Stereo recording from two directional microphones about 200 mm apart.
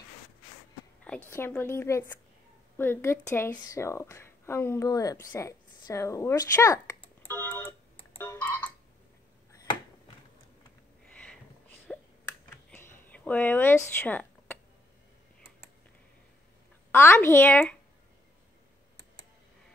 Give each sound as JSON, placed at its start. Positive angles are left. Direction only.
{"t": 1.0, "sound": "a woman's voice", "side_deg": 5}
{"t": 7.2, "sound": "tick-tock", "side_deg": 10}
{"t": 8.2, "sound": "frog", "side_deg": 10}
{"t": 11.9, "sound": "a sound", "side_deg": 0}
{"t": 16.9, "sound": "speech", "side_deg": 10}